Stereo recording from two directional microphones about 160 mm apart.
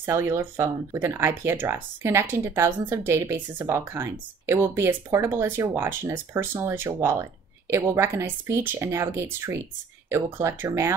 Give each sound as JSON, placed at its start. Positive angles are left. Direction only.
{"t": 0.0, "sound": "speech", "side_deg": -15}